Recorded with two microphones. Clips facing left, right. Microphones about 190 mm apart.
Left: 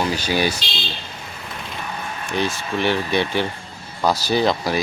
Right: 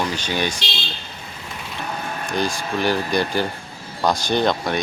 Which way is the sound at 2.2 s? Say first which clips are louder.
Even; 35° right (ahead or behind).